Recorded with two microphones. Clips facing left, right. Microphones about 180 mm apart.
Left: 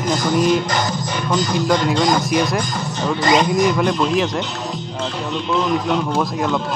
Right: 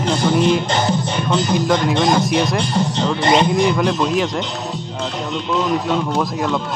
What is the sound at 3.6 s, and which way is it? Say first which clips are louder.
Speech: even; centre (ahead or behind).